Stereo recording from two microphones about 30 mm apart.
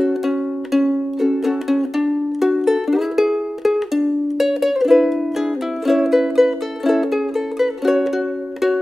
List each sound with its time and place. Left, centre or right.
0.0 s music: centre